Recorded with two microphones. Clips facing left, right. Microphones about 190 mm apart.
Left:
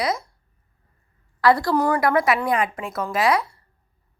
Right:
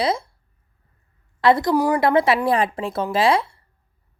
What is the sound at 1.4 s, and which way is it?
Speech, 20° right (ahead or behind).